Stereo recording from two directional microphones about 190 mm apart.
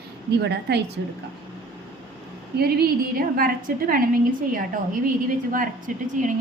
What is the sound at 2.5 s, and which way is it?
A woman's voice, 55° right (ahead or behind).